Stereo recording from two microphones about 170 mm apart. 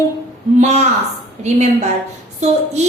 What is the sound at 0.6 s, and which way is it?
Speech, 40° right (ahead or behind).